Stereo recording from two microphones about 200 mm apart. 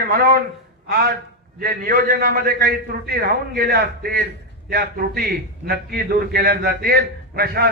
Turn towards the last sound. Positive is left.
turn(degrees=-50)  # may be behind; listen again after turning